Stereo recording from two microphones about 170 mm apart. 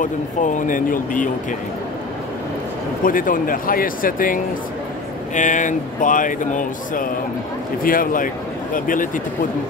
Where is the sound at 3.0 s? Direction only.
55° left (ahead or behind).